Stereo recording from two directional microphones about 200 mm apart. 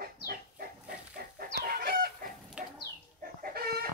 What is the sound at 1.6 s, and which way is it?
Chicken, 50° right (ahead or behind).